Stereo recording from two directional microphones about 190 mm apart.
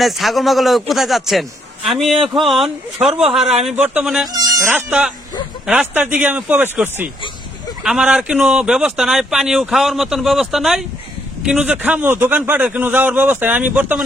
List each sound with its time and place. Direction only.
0.0 s speech: centre (ahead or behind)
2.1 s speech: 25° right (ahead or behind)
2.4 s speech: centre (ahead or behind)
4.3 s a sound: 20° right (ahead or behind)
4.6 s a man's voice: 5° right (ahead or behind)